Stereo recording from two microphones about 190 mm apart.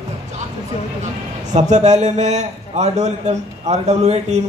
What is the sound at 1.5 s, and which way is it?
A man's voice, 40° right (ahead or behind).